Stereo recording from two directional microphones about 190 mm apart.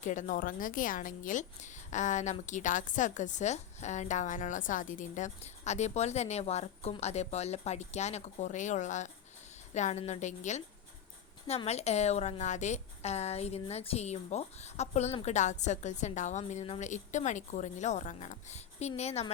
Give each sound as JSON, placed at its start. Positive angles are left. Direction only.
{"t": 0.0, "sound": "a woman's voice", "side_deg": 40}